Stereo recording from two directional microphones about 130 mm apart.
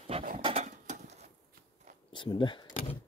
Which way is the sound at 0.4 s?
50° right (ahead or behind).